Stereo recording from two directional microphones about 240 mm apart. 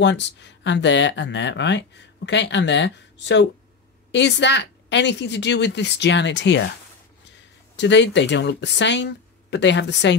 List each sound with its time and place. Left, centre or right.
0.0 s speech: left
7.7 s speech: left